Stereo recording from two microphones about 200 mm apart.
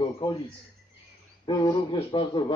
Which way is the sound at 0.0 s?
20° left (ahead or behind).